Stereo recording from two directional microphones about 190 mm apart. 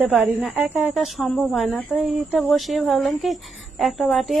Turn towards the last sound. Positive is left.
turn(degrees=0)  # may be behind; listen again after turning